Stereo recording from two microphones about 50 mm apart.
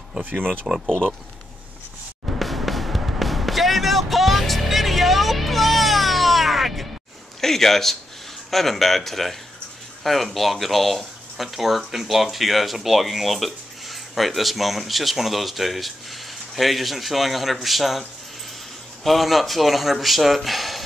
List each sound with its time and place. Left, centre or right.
0.8 s speech: centre
2.3 s music: centre
7.3 s speech: centre
19.0 s speech: centre